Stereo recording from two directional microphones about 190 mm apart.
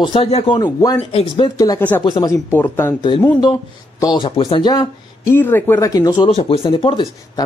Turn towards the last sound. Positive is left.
turn(degrees=25)  # may be behind; listen again after turning